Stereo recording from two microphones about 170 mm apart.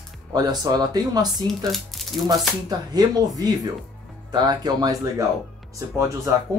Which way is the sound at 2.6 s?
25° right (ahead or behind).